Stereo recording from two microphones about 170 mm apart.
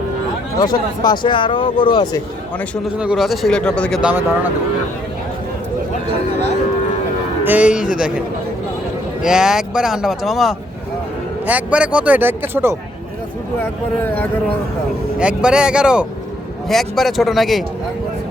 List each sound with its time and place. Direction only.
1.0 s speech: 25° left (ahead or behind)
2.8 s speech: 5° right (ahead or behind)
4.0 s speech: 10° right (ahead or behind)
7.4 s speech: 10° right (ahead or behind)
9.2 s speech: 5° right (ahead or behind)
13.6 s speech: 10° left (ahead or behind)
15.2 s speech: 5° right (ahead or behind)